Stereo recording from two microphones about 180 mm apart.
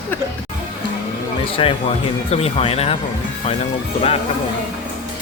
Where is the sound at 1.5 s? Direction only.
30° left (ahead or behind).